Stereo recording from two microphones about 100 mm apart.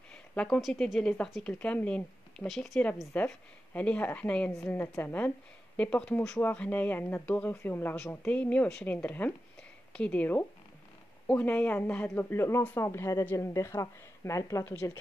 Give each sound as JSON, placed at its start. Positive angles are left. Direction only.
{"t": 0.1, "sound": "a sound", "side_deg": 10}
{"t": 0.6, "sound": "speech", "side_deg": -5}
{"t": 2.4, "sound": "speech", "side_deg": 0}
{"t": 3.1, "sound": "a woman's voice", "side_deg": 15}
{"t": 14.6, "sound": "a woman's voice", "side_deg": 20}